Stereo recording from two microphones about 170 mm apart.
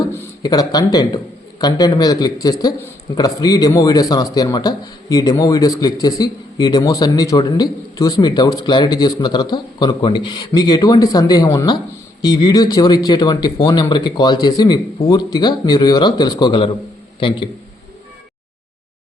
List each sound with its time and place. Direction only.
0.4 s a man's voice: 20° left (ahead or behind)